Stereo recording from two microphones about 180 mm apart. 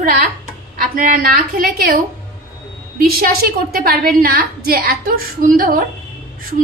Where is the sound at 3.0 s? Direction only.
55° right (ahead or behind).